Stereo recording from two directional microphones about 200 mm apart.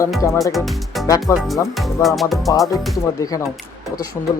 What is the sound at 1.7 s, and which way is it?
Music, centre (ahead or behind).